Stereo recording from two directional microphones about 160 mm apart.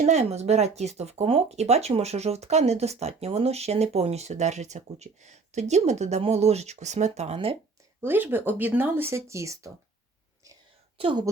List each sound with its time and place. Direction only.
0.0 s speech: 45° right (ahead or behind)
8.0 s speech: 15° right (ahead or behind)
10.9 s a woman's voice: 30° right (ahead or behind)